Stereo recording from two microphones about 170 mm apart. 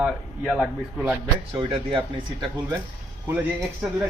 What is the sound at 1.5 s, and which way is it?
Speech, 30° right (ahead or behind).